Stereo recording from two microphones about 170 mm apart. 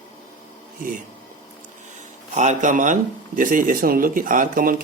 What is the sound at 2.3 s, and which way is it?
Speech, 45° right (ahead or behind).